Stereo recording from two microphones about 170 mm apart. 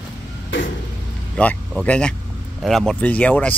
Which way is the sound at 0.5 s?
90° left.